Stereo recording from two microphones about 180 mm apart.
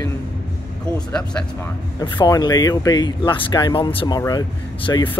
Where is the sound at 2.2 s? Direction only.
20° left (ahead or behind).